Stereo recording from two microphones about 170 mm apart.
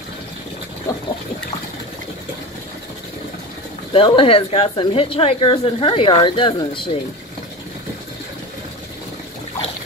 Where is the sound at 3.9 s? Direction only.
30° left (ahead or behind).